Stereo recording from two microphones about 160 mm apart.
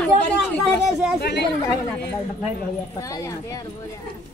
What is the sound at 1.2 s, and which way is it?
Speech, 90° left.